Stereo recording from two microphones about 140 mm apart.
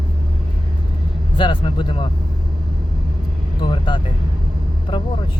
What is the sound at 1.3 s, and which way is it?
Vehicle, 35° left (ahead or behind).